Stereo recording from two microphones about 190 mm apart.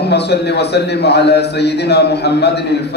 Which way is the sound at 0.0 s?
60° left (ahead or behind).